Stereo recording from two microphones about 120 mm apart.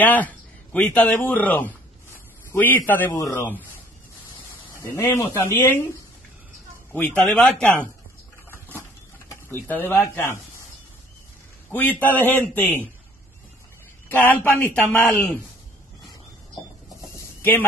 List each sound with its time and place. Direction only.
0.0 s a man's voice: 15° left (ahead or behind)
3.2 s speech: 25° left (ahead or behind)
4.7 s speech: 20° left (ahead or behind)
6.9 s a man's voice: 10° left (ahead or behind)
8.5 s a sound: 15° left (ahead or behind)
9.3 s speech: 20° left (ahead or behind)
11.7 s a man's voice: 15° left (ahead or behind)
14.0 s a man's voice: 15° left (ahead or behind)
17.1 s a sound: 15° left (ahead or behind)